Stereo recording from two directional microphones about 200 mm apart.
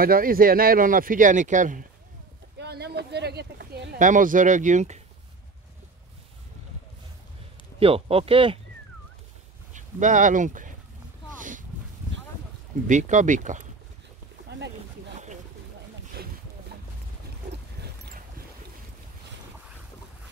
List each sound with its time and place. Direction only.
0.0 s speech: 45° right (ahead or behind)
2.6 s speech: 55° right (ahead or behind); by 5.0 s 35° right (ahead or behind)
7.8 s speech: 30° right (ahead or behind)
9.7 s speech: 40° right (ahead or behind)
11.3 s a sound: 40° right (ahead or behind)
12.8 s speech: 40° right (ahead or behind)